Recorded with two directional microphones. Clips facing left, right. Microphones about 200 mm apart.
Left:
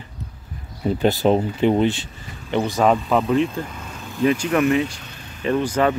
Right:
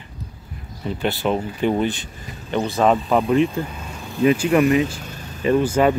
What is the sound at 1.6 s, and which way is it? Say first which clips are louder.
Speech: left 3 dB; 20° left (ahead or behind).